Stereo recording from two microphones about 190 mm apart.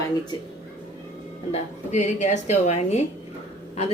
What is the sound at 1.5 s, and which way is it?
A woman's voice, 40° left (ahead or behind).